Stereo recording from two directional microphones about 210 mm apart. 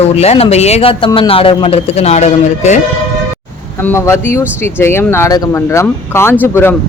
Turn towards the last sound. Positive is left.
turn(degrees=10)  # may be behind; listen again after turning